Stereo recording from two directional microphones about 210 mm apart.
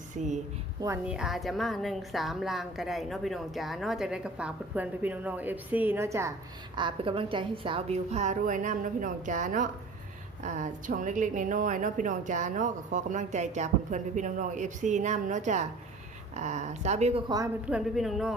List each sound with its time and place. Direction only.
1.0 s speech: 5° right (ahead or behind)
6.7 s speech: 25° right (ahead or behind)
17.7 s speech: 5° right (ahead or behind)